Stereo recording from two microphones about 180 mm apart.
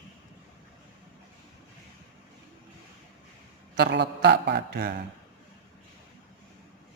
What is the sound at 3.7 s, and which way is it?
A man's voice, 65° right (ahead or behind).